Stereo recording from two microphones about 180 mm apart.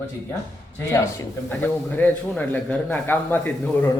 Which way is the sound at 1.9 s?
10° left (ahead or behind).